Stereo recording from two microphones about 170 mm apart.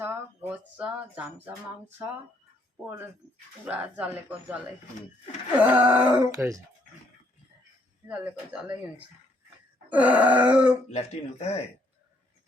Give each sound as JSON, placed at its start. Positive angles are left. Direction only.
{"t": 0.0, "sound": "speech", "side_deg": -10}
{"t": 3.7, "sound": "speech", "side_deg": -10}
{"t": 8.0, "sound": "speech", "side_deg": -10}
{"t": 10.8, "sound": "speech", "side_deg": 40}